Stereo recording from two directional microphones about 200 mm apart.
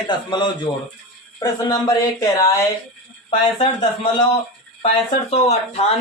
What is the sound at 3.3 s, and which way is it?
Speech, 25° left (ahead or behind).